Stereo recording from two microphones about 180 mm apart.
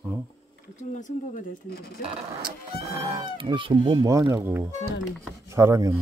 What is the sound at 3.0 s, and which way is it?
Speech, 25° right (ahead or behind).